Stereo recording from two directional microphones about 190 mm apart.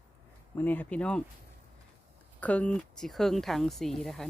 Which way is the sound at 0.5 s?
10° left (ahead or behind).